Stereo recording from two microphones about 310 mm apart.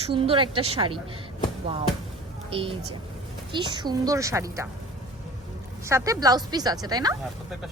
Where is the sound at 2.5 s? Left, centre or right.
Centre.